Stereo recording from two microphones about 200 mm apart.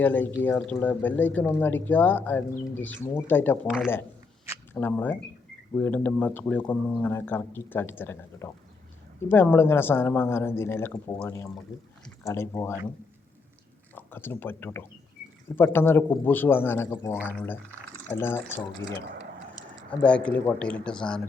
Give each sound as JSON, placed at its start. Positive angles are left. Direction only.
{"t": 0.0, "sound": "speech", "side_deg": 10}
{"t": 4.7, "sound": "speech", "side_deg": 10}
{"t": 13.9, "sound": "speech", "side_deg": 10}